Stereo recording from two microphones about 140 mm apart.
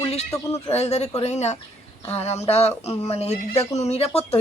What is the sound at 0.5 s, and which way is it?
A woman's voice, 50° left (ahead or behind).